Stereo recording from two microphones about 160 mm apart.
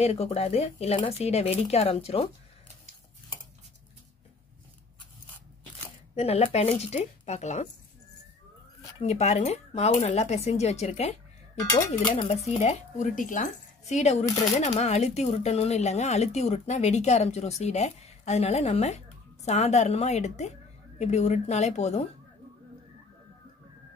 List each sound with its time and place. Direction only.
0.0 s speech: 40° left (ahead or behind)
6.1 s speech: 40° left (ahead or behind)
9.0 s speech: 45° left (ahead or behind)